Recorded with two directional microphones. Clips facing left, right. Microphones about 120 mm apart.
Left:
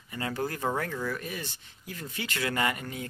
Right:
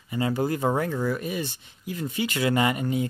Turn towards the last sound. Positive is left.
turn(degrees=-20)  # may be behind; listen again after turning